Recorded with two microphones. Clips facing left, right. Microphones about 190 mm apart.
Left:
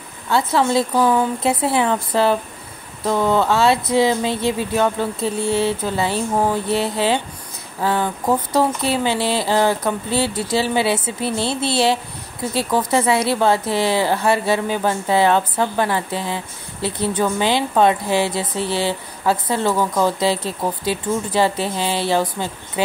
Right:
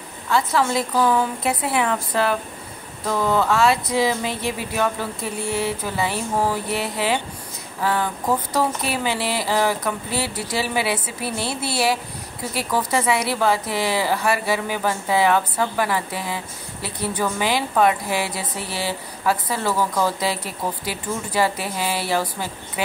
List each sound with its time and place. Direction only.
0.3 s speech: 25° left (ahead or behind)